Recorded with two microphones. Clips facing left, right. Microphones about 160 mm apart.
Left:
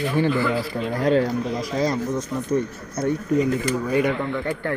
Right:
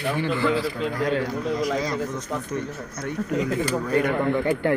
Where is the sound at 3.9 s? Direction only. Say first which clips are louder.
Left 2 dB; 10° left (ahead or behind).